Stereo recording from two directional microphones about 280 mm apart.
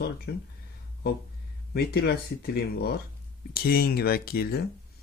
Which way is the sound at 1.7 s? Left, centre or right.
Left.